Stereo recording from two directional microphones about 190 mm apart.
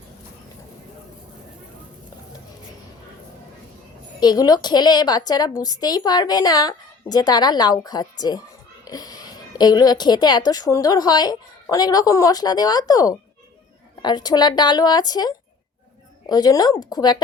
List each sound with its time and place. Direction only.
4.2 s a woman's voice: 20° left (ahead or behind)